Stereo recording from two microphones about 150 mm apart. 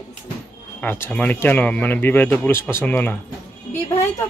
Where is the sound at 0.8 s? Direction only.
10° left (ahead or behind).